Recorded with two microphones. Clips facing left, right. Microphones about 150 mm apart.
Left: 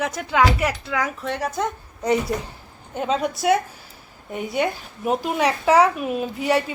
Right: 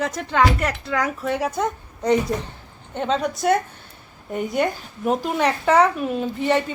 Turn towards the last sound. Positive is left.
turn(degrees=10)  # may be behind; listen again after turning